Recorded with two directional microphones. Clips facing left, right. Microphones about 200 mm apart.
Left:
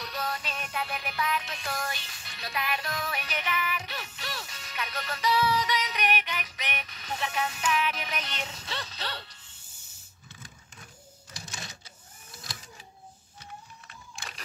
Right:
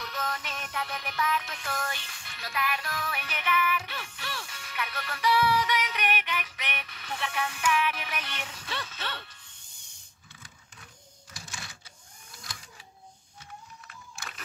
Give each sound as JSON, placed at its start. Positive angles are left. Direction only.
{"t": 0.0, "sound": "music", "side_deg": 15}
{"t": 8.8, "sound": "music", "side_deg": 35}
{"t": 9.6, "sound": "a sound", "side_deg": 5}
{"t": 11.3, "sound": "printer", "side_deg": 20}
{"t": 13.8, "sound": "music", "side_deg": 30}